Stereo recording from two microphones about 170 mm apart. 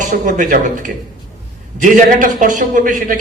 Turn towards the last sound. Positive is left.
turn(degrees=-50)  # may be behind; listen again after turning